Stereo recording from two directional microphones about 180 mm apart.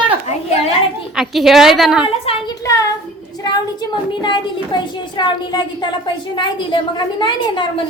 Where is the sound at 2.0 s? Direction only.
30° left (ahead or behind).